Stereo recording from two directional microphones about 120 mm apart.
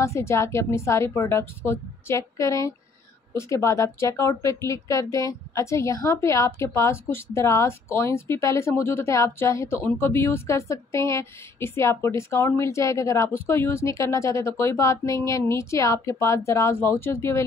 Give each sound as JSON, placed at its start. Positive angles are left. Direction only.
{"t": 0.0, "sound": "a woman's voice", "side_deg": 25}